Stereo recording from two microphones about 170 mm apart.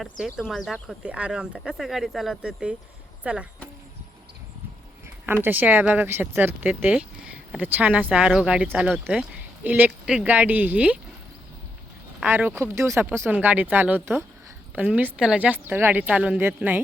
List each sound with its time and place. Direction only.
0.3 s speech: 5° right (ahead or behind)
5.2 s speech: 10° right (ahead or behind)
12.2 s speech: 10° right (ahead or behind)